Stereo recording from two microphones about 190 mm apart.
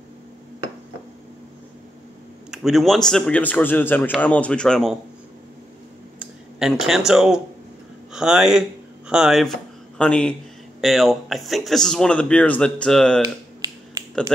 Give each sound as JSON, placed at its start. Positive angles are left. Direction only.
{"t": 2.5, "sound": "speech", "side_deg": 0}
{"t": 6.1, "sound": "a sound", "side_deg": 0}
{"t": 7.1, "sound": "speech", "side_deg": -5}
{"t": 13.2, "sound": "finger snapping", "side_deg": -20}